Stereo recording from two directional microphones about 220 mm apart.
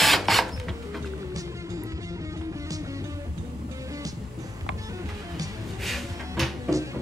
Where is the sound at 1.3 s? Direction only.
15° right (ahead or behind).